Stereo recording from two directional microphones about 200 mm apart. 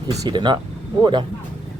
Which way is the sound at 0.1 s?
20° right (ahead or behind).